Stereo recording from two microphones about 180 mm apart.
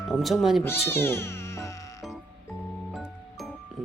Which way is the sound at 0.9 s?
15° left (ahead or behind).